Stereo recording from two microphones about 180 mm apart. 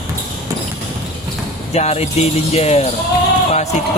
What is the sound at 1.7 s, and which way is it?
Speech, 35° left (ahead or behind).